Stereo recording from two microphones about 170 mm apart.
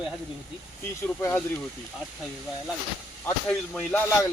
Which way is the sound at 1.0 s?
10° left (ahead or behind).